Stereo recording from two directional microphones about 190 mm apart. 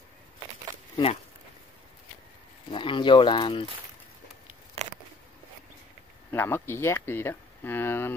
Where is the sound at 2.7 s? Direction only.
25° left (ahead or behind).